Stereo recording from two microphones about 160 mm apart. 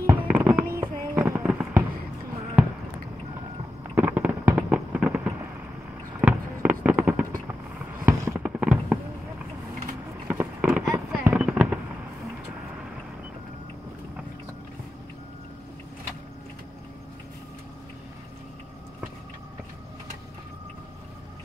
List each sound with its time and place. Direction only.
0.0 s fireworks: 10° right (ahead or behind)
3.9 s a sound: 10° right (ahead or behind)
6.2 s fireworks: 10° right (ahead or behind)
10.2 s fireworks: 10° right (ahead or behind)